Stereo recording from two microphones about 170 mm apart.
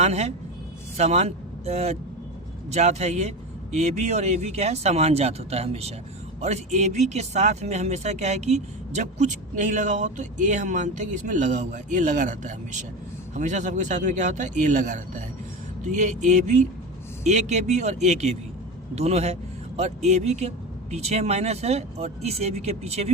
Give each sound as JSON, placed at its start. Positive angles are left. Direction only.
{"t": 0.0, "sound": "a man's voice", "side_deg": -40}